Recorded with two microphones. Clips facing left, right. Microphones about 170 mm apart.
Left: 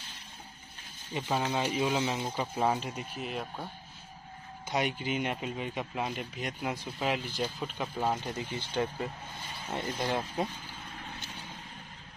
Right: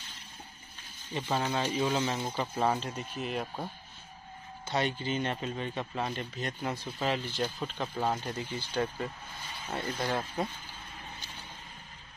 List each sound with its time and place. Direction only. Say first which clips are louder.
1.1 s speech: even; 10° left (ahead or behind)
4.6 s speech: even; 10° left (ahead or behind)
8.2 s speech: even; 20° left (ahead or behind)